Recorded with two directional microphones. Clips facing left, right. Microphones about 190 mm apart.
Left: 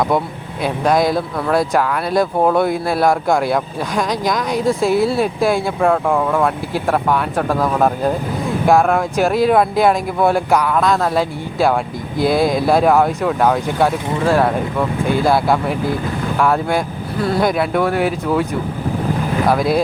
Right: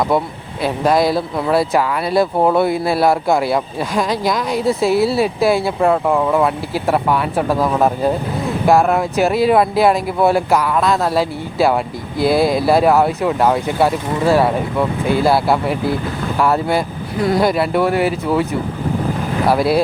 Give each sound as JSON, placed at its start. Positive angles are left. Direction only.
{"t": 0.6, "sound": "speech", "side_deg": -5}
{"t": 19.5, "sound": "speech", "side_deg": -5}